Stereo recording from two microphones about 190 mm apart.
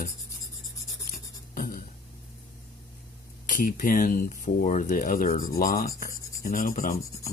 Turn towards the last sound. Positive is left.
turn(degrees=45)  # may be behind; listen again after turning